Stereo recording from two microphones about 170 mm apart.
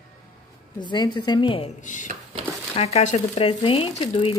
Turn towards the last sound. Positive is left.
turn(degrees=35)  # may be behind; listen again after turning